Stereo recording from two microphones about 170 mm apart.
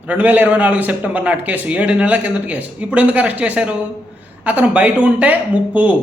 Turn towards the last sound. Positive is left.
turn(degrees=-10)  # may be behind; listen again after turning